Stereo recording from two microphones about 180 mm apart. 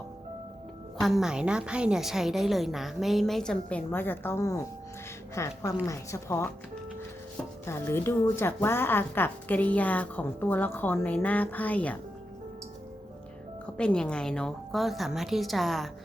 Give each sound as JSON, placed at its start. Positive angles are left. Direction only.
{"t": 0.9, "sound": "a woman's voice", "side_deg": 0}
{"t": 7.6, "sound": "a woman's voice", "side_deg": 15}
{"t": 13.7, "sound": "a woman's voice", "side_deg": 5}